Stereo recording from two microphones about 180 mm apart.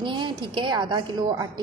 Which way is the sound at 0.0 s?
25° right (ahead or behind).